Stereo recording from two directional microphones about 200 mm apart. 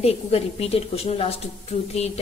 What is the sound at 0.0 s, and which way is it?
Speech, 30° left (ahead or behind).